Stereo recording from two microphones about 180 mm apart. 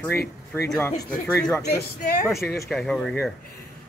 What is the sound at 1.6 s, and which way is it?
Speech, 55° left (ahead or behind).